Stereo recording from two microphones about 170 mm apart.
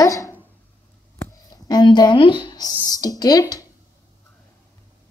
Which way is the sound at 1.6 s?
25° left (ahead or behind).